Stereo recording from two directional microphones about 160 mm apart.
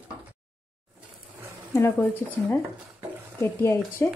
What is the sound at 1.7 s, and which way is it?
Speech, 15° left (ahead or behind).